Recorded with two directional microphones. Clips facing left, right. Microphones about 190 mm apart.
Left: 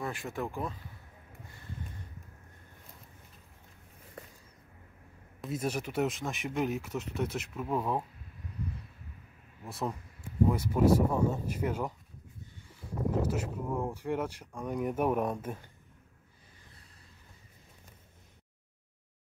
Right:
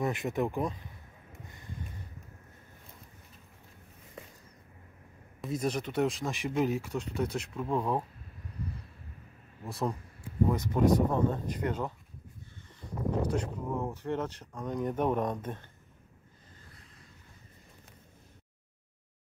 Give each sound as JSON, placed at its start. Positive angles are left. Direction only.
{"t": 0.0, "sound": "speech", "side_deg": -20}
{"t": 5.4, "sound": "speech", "side_deg": 5}
{"t": 9.7, "sound": "speech", "side_deg": 0}
{"t": 13.2, "sound": "speech", "side_deg": 5}